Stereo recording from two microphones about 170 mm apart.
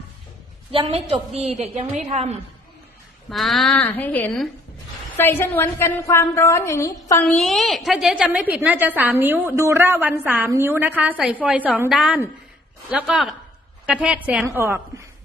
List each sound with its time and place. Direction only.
0.7 s a woman's voice: 35° right (ahead or behind)
3.2 s a woman's voice: centre (ahead or behind); by 7.3 s 15° left (ahead or behind)
7.3 s a woman's voice: centre (ahead or behind); by 15.0 s 15° right (ahead or behind)